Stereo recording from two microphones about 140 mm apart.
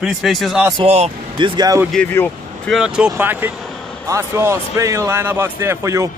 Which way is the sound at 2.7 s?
5° right (ahead or behind).